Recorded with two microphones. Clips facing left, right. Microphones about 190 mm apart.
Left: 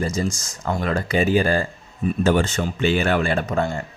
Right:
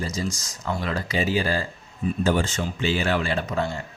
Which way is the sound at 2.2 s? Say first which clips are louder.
Left 4 dB; 65° left (ahead or behind).